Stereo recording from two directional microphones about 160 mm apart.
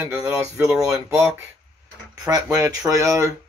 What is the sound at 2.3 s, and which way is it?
Speech, 25° right (ahead or behind).